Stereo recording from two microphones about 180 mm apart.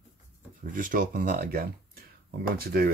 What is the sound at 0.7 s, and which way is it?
Speech, 50° right (ahead or behind).